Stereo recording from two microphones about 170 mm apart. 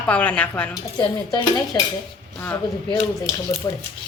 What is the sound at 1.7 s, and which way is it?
Dishes, 20° left (ahead or behind).